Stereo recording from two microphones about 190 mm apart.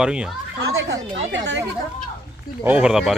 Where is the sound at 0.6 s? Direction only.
65° right (ahead or behind).